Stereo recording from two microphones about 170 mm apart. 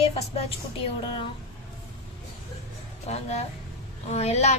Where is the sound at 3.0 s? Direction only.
40° left (ahead or behind).